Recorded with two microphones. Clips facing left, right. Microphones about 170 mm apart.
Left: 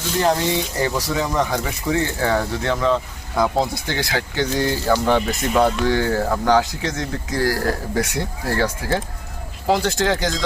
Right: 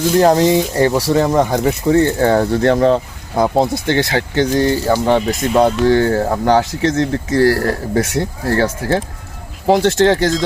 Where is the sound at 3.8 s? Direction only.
55° right (ahead or behind).